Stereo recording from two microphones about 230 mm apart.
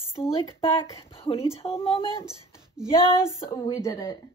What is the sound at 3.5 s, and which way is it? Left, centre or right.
Speech, centre.